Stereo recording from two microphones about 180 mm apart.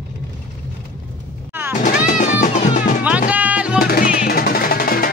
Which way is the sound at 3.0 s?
10° right (ahead or behind).